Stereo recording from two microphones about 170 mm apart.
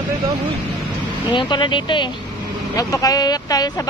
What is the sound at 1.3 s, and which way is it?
Speech, 25° left (ahead or behind).